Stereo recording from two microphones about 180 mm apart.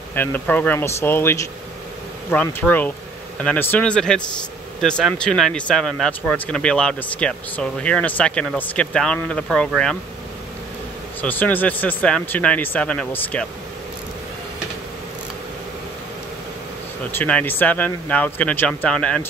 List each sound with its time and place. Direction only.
0.1 s speech: 10° left (ahead or behind)
11.1 s speech: 10° left (ahead or behind)
17.2 s speech: 10° left (ahead or behind)